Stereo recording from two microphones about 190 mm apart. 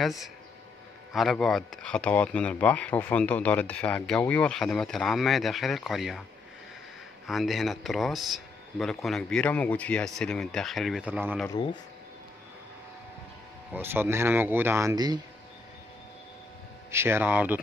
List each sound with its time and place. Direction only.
0.0 s speech: centre (ahead or behind)
7.2 s speech: centre (ahead or behind)
11.4 s speech: 20° left (ahead or behind)
13.7 s speech: 10° right (ahead or behind)
16.9 s speech: 10° right (ahead or behind)